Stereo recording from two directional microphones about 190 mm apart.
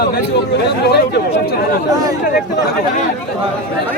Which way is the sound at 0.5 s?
60° left (ahead or behind).